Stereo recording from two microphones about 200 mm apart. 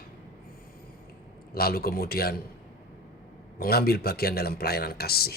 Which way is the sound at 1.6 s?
50° left (ahead or behind).